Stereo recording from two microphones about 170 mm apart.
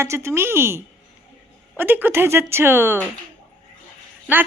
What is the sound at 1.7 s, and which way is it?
Speech, 10° right (ahead or behind).